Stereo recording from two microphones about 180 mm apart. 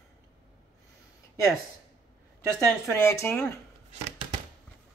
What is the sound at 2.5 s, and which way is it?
Speech, 15° left (ahead or behind).